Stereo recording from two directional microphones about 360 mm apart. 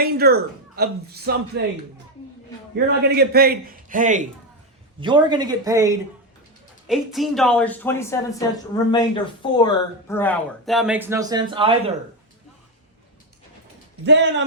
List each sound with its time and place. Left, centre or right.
0.0 s a man's voice: right
2.7 s a man's voice: right
14.0 s a man's voice: right